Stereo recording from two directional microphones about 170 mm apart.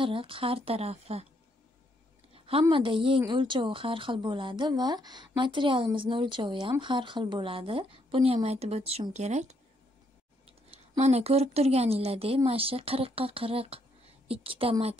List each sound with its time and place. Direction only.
0.0 s speech: 30° right (ahead or behind)
2.3 s a sound: 35° right (ahead or behind)
2.7 s speech: 30° right (ahead or behind)
11.0 s speech: 40° right (ahead or behind)